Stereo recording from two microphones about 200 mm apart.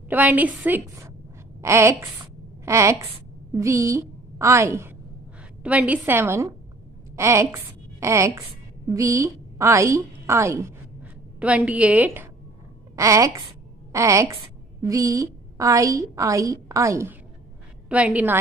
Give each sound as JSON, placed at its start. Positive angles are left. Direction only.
{"t": 0.1, "sound": "a woman's voice", "side_deg": -10}